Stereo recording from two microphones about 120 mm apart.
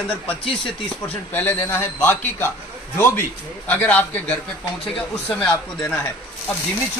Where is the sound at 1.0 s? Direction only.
15° left (ahead or behind).